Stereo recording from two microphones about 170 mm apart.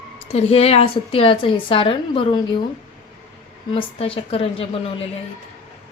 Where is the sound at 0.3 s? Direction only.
35° left (ahead or behind).